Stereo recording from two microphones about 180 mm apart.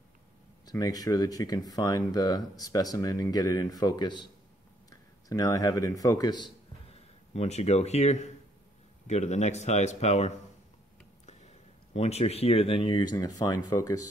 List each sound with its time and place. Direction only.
0.7 s a man's voice: 20° left (ahead or behind)
7.3 s speech: 35° left (ahead or behind); by 14.0 s 20° left (ahead or behind)